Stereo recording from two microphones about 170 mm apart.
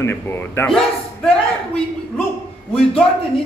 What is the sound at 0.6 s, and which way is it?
Speech, centre (ahead or behind).